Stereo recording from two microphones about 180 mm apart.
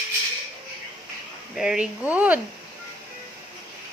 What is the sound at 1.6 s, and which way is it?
Speech, 5° right (ahead or behind).